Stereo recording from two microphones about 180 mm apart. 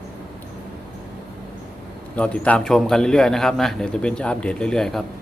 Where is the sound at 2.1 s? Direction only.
5° left (ahead or behind).